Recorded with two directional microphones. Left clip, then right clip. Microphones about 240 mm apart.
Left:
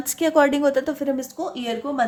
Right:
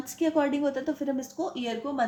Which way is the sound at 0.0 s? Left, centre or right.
Left.